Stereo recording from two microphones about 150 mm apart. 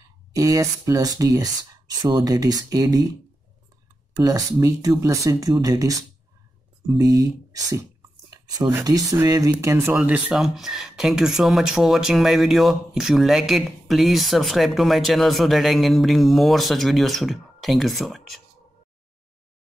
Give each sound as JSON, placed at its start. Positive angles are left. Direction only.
{"t": 0.3, "sound": "speech", "side_deg": -20}
{"t": 4.2, "sound": "speech", "side_deg": -25}